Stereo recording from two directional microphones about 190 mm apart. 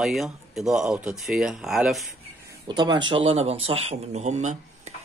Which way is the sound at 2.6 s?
25° right (ahead or behind).